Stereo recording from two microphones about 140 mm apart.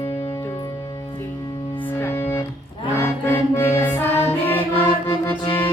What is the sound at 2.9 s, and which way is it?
Accordion, 15° left (ahead or behind).